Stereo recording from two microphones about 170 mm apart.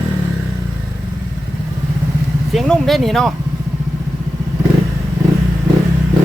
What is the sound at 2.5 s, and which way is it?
Speech, centre (ahead or behind).